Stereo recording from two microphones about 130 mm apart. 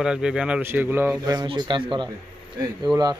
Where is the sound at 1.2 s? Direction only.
30° right (ahead or behind).